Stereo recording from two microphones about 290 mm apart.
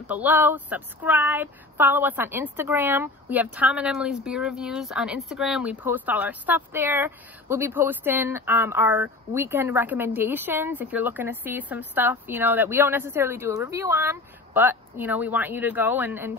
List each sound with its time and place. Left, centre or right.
0.0 s a woman's voice: centre